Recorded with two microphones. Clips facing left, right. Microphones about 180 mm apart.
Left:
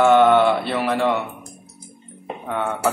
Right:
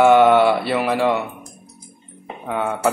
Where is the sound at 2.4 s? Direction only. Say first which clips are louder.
Right 2 dB; 5° right (ahead or behind).